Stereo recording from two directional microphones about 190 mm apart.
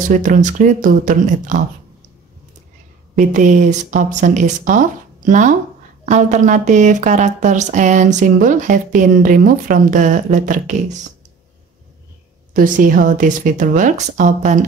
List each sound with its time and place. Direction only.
0.1 s a woman's voice: 40° right (ahead or behind)
3.2 s speech: 40° right (ahead or behind)
12.5 s a woman's voice: 45° right (ahead or behind)